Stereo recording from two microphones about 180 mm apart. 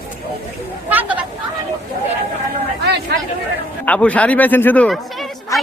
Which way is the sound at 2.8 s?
65° right (ahead or behind).